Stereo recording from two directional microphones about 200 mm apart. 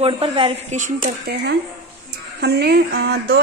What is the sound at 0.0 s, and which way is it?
Speech, 30° right (ahead or behind).